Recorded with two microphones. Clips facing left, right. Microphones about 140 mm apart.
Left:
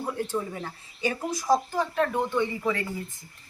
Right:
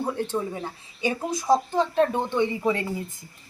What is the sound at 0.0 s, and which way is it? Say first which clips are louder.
Dishes: right 3 dB; 25° right (ahead or behind).